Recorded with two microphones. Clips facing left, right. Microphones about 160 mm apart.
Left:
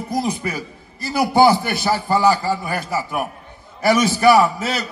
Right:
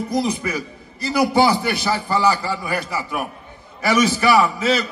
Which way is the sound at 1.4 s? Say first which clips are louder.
Left 3 dB; 45° left (ahead or behind).